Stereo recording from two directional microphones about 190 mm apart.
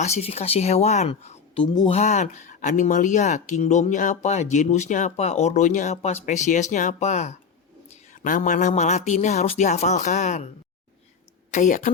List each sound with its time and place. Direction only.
0.0 s speech: 35° left (ahead or behind)
2.0 s speech: 35° left (ahead or behind)
11.5 s speech: 40° left (ahead or behind)